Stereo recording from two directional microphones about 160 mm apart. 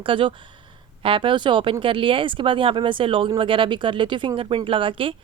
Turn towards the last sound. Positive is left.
turn(degrees=-35)  # may be behind; listen again after turning